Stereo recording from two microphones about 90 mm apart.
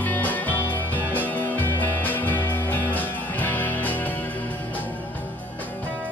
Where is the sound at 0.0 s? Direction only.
20° left (ahead or behind).